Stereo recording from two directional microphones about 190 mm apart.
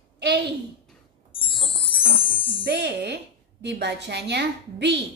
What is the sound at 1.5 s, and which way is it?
Music, 30° left (ahead or behind).